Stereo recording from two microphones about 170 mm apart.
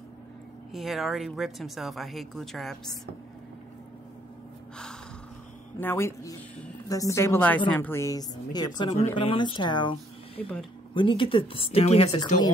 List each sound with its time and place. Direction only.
0.7 s speech: centre (ahead or behind)
5.8 s a woman's voice: 15° left (ahead or behind); by 12.4 s 35° left (ahead or behind)